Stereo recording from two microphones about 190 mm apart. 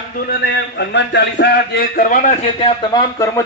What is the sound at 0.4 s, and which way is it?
A man's voice, 65° left (ahead or behind).